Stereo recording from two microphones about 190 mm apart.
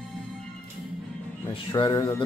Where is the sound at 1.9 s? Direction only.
15° left (ahead or behind).